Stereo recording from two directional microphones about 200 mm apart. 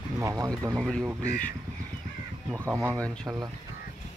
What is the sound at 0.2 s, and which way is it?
Speech, 15° right (ahead or behind).